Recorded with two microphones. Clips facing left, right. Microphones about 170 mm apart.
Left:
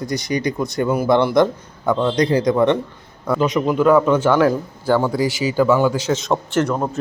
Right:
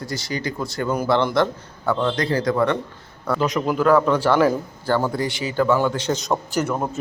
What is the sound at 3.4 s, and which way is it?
A man's voice, centre (ahead or behind).